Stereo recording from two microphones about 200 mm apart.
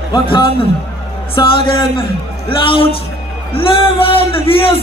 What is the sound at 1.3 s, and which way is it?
Speech, 25° left (ahead or behind).